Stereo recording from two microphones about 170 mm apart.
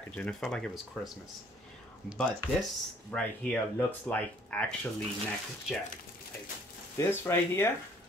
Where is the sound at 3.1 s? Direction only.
5° left (ahead or behind).